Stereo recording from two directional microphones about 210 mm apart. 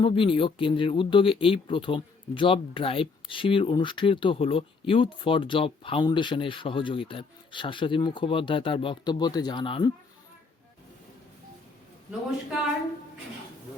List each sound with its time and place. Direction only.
0.0 s speech: 25° left (ahead or behind)